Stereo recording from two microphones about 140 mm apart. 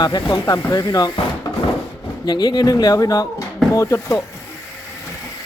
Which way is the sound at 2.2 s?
30° left (ahead or behind).